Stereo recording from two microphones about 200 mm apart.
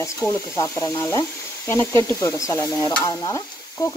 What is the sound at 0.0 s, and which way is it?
Stir, 15° left (ahead or behind).